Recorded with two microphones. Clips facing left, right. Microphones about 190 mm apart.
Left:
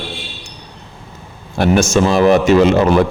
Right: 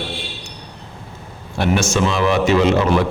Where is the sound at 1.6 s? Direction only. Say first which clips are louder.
Left 5 dB; 45° left (ahead or behind).